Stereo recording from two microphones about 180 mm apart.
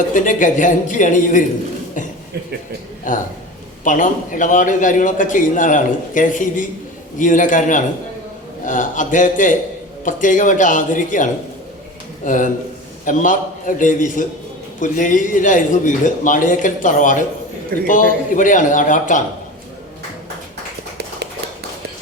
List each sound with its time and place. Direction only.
0.1 s a man's voice: 45° left (ahead or behind)
3.1 s a man's voice: 45° left (ahead or behind)